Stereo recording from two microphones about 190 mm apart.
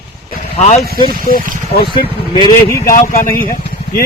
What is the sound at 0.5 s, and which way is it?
Speech, 35° left (ahead or behind).